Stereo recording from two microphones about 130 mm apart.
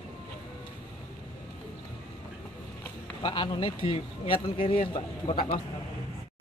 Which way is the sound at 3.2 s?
35° left (ahead or behind).